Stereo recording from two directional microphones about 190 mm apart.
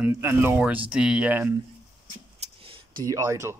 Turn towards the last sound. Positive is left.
turn(degrees=-15)  # may be behind; listen again after turning